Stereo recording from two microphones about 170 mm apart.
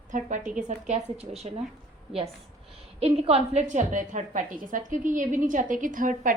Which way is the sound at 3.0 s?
35° right (ahead or behind).